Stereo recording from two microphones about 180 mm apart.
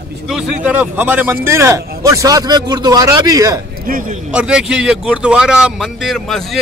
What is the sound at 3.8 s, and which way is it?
Speech, 50° right (ahead or behind).